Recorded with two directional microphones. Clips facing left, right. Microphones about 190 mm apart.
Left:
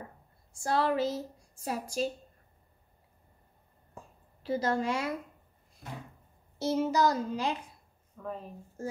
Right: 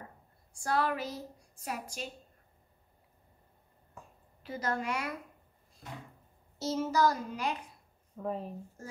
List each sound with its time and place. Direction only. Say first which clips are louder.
0.5 s a woman's voice: left 3 dB; 25° left (ahead or behind)
3.9 s a sound: left 3 dB; 30° left (ahead or behind)
6.6 s speech: left 2 dB; 15° left (ahead or behind)
8.2 s speech: right 4 dB; 30° right (ahead or behind)